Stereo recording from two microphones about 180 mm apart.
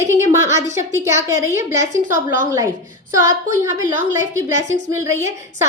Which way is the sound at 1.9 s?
45° right (ahead or behind).